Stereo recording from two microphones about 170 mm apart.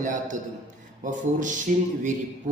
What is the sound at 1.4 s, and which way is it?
Speech, 50° right (ahead or behind).